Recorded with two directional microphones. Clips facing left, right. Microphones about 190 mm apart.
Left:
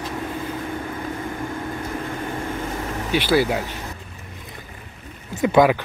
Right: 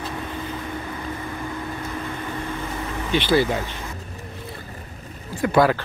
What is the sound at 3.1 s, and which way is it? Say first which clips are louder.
Speech: even; 10° left (ahead or behind).